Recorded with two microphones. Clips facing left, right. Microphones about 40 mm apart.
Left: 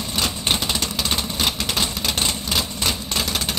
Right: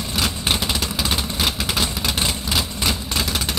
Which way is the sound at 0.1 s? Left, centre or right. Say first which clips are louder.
Right 1 dB; centre.